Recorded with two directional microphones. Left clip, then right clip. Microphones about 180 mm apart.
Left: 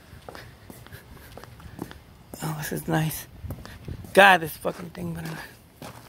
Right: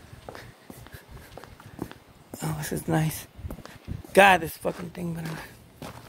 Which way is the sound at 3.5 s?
55° left (ahead or behind).